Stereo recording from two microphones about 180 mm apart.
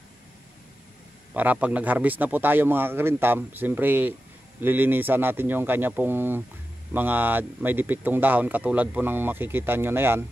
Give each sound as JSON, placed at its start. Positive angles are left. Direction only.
{"t": 1.3, "sound": "speech", "side_deg": -10}